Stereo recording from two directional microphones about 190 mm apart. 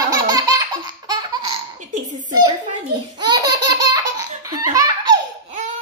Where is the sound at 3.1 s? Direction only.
20° right (ahead or behind).